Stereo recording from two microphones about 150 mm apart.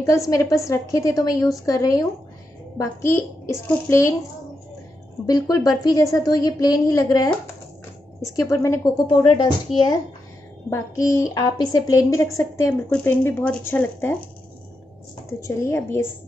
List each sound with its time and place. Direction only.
0.0 s a woman's voice: 20° left (ahead or behind)
5.2 s a woman's voice: 25° left (ahead or behind)
8.4 s a woman's voice: 20° left (ahead or behind)
10.7 s a woman's voice: 20° left (ahead or behind)
15.4 s a woman's voice: 20° left (ahead or behind)